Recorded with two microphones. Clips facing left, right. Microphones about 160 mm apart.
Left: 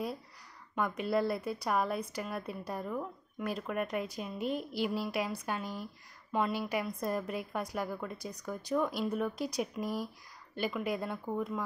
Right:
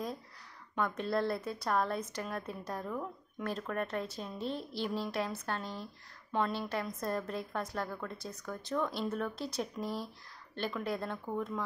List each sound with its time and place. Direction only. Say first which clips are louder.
0.7 s a woman's voice: left 2 dB; 10° left (ahead or behind)